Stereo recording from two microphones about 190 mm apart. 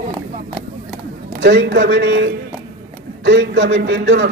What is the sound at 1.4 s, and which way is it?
Speech, 65° right (ahead or behind).